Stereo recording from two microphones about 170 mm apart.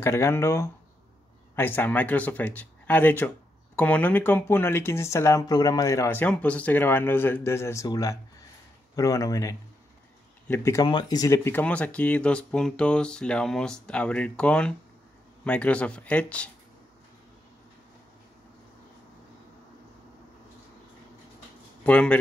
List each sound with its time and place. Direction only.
0.0 s speech: 15° left (ahead or behind)
21.8 s speech: 5° left (ahead or behind)